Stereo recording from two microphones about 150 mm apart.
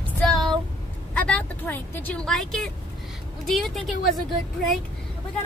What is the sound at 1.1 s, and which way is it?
Speech, 5° left (ahead or behind).